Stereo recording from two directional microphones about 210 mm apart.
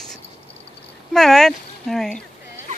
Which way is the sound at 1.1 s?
Centre (ahead or behind).